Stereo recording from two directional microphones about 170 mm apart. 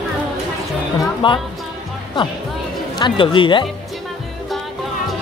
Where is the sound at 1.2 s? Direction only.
30° left (ahead or behind).